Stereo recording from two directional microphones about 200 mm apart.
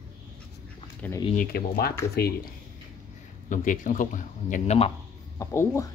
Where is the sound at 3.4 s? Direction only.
40° left (ahead or behind).